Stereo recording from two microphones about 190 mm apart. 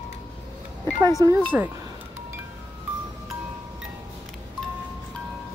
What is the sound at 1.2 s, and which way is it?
Speech, 20° right (ahead or behind).